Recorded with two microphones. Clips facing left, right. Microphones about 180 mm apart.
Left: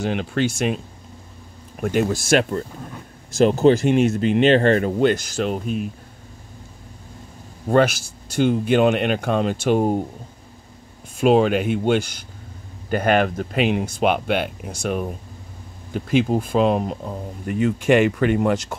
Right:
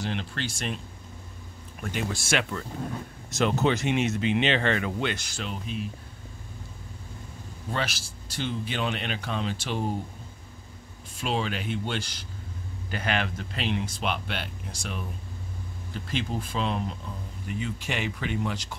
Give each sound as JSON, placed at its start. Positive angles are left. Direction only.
{"t": 0.0, "sound": "speech", "side_deg": 50}
{"t": 1.8, "sound": "speech", "side_deg": 50}
{"t": 7.6, "sound": "a man's voice", "side_deg": 50}
{"t": 11.1, "sound": "speech", "side_deg": 50}